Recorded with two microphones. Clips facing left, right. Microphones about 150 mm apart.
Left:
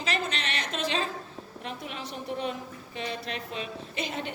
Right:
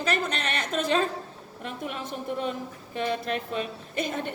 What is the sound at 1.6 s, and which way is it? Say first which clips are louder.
A woman's voice: right 4 dB; 50° right (ahead or behind).